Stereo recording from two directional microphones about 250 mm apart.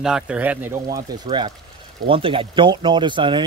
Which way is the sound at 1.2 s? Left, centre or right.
Right.